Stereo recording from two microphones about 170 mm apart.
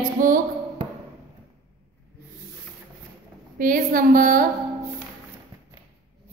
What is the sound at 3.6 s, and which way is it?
Speech, 55° right (ahead or behind).